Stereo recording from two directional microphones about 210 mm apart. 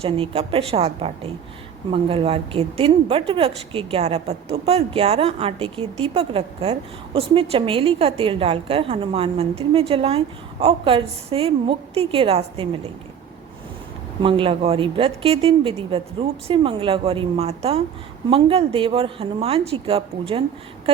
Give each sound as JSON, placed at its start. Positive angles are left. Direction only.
{"t": 0.0, "sound": "a woman's voice", "side_deg": -30}
{"t": 14.2, "sound": "a woman's voice", "side_deg": -25}